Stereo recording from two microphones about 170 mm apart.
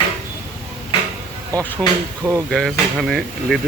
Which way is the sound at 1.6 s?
10° left (ahead or behind).